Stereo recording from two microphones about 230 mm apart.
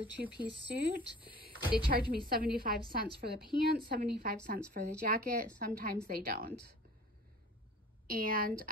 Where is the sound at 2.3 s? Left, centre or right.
Right.